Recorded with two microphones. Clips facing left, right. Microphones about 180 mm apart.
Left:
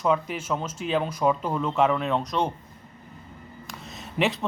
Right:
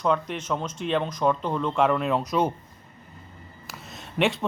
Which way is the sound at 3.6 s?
Centre (ahead or behind).